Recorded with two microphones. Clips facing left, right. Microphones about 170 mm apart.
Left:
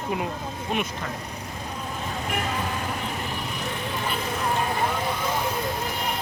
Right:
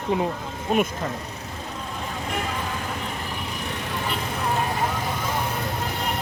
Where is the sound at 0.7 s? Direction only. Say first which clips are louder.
Right 6 dB; 40° right (ahead or behind).